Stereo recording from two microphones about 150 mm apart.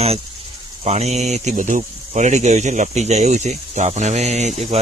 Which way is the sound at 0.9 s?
45° right (ahead or behind).